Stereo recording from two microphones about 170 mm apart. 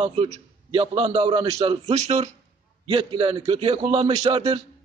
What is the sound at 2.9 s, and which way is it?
A man's voice, 30° right (ahead or behind).